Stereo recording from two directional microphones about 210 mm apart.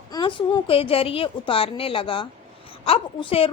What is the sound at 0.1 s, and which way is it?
A woman's voice, 20° left (ahead or behind).